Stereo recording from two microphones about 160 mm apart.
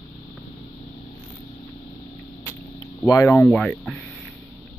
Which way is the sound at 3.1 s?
20° left (ahead or behind).